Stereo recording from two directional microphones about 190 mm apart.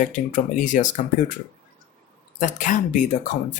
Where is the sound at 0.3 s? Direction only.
40° left (ahead or behind).